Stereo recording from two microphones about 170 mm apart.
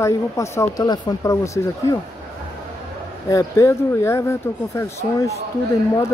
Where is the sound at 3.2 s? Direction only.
20° left (ahead or behind).